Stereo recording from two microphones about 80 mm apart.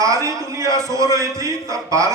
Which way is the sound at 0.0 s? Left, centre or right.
Right.